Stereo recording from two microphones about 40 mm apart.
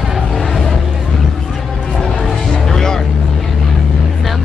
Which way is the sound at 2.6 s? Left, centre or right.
Centre.